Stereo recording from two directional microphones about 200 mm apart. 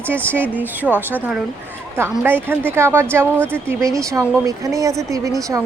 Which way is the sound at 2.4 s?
10° right (ahead or behind).